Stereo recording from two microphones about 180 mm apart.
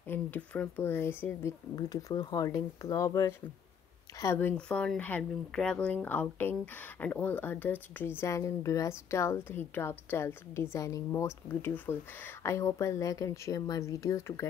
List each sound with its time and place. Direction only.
0.1 s speech: 10° left (ahead or behind)